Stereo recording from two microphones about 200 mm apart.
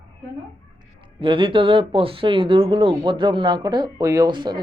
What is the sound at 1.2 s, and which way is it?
Speech, 25° right (ahead or behind).